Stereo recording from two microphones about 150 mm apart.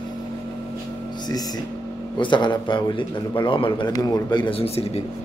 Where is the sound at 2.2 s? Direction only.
30° left (ahead or behind).